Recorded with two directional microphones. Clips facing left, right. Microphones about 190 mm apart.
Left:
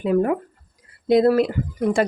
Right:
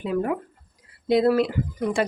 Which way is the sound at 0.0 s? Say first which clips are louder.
Left 5 dB; 50° left (ahead or behind).